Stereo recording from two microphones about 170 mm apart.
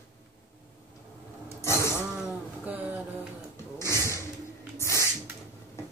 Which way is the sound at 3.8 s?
15° left (ahead or behind).